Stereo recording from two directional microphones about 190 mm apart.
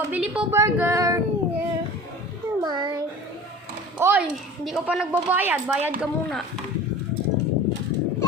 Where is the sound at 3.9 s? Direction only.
10° right (ahead or behind).